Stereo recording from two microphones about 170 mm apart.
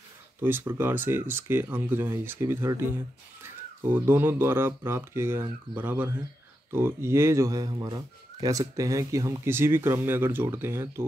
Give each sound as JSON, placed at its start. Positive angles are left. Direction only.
{"t": 0.4, "sound": "speech", "side_deg": -15}